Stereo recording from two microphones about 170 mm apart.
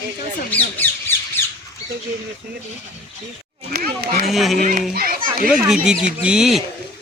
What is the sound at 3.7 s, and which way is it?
Speech, 65° right (ahead or behind).